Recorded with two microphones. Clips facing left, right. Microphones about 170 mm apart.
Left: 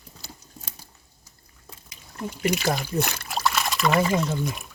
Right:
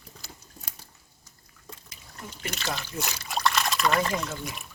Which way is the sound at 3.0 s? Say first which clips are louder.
Left 7 dB; 55° left (ahead or behind).